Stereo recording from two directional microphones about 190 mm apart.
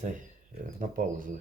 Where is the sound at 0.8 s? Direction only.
45° right (ahead or behind).